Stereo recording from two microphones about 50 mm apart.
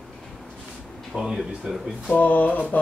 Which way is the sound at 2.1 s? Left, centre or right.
Left.